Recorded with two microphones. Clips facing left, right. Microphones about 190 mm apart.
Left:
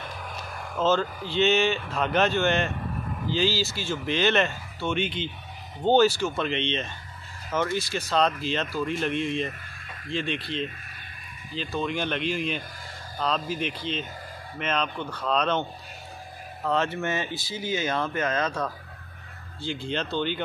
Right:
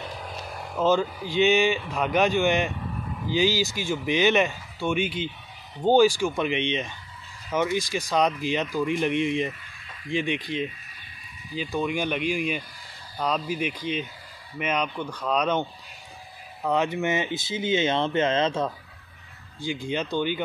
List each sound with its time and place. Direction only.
0.7 s speech: 15° right (ahead or behind)
16.6 s speech: 15° right (ahead or behind)
19.6 s speech: 10° right (ahead or behind)